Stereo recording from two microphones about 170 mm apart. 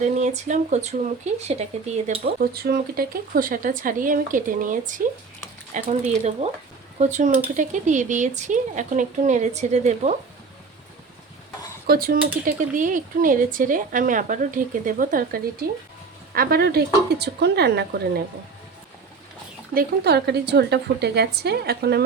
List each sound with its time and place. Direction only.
0.0 s speech: 45° right (ahead or behind)
2.2 s speech: 65° right (ahead or behind); by 10.2 s 40° right (ahead or behind)
11.9 s a woman's voice: 60° right (ahead or behind)
19.7 s a woman's voice: 75° right (ahead or behind)